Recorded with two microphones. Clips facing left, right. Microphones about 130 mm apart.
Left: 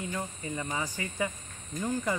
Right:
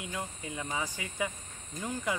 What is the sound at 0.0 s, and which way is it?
Speech, 5° right (ahead or behind).